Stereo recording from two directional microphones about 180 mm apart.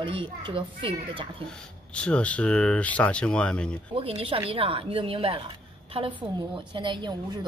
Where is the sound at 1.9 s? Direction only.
5° left (ahead or behind).